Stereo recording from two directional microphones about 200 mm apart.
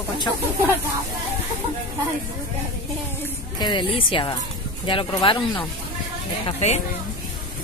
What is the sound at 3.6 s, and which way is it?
Speech, 25° left (ahead or behind).